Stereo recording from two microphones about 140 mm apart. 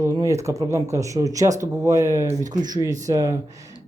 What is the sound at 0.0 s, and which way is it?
Speech, 20° right (ahead or behind).